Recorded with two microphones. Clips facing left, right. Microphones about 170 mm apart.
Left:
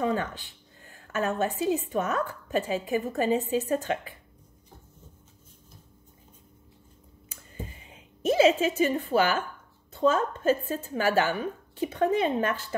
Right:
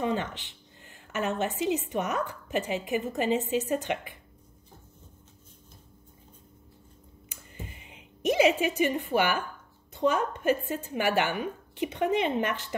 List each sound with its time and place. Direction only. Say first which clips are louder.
0.1 s a woman's voice: left 1 dB; 20° right (ahead or behind)
7.8 s a woman's voice: even; 20° right (ahead or behind)